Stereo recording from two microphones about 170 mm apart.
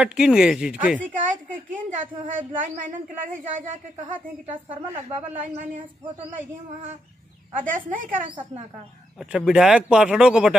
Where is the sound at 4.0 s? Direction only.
45° right (ahead or behind).